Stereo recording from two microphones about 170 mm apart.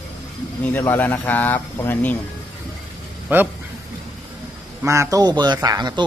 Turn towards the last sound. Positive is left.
turn(degrees=-25)  # may be behind; listen again after turning